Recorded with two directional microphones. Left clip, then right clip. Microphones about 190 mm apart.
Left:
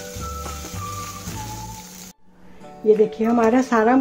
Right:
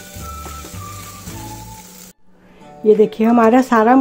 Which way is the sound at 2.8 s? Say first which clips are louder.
Right 4 dB; 40° right (ahead or behind).